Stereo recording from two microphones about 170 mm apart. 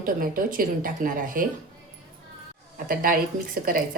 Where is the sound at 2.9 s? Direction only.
55° right (ahead or behind).